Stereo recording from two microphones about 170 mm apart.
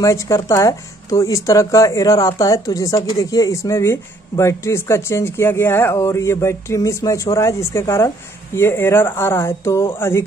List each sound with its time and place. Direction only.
0.0 s speech: 15° left (ahead or behind)